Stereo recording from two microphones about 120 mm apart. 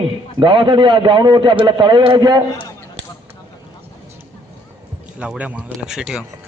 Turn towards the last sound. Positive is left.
turn(degrees=-5)  # may be behind; listen again after turning